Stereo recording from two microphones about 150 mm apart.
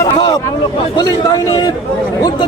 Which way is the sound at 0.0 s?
25° left (ahead or behind).